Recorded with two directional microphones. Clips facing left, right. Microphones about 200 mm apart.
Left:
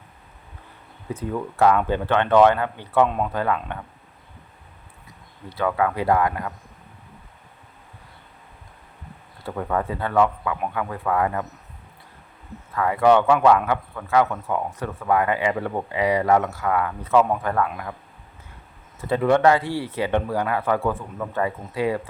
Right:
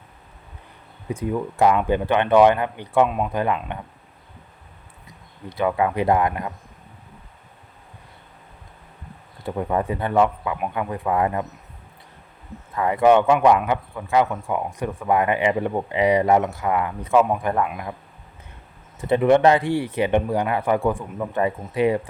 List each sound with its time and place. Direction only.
1.1 s speech: 10° right (ahead or behind)
5.5 s speech: 15° right (ahead or behind)
9.4 s speech: 15° right (ahead or behind)
12.7 s speech: 20° right (ahead or behind)
18.9 s speech: 20° right (ahead or behind)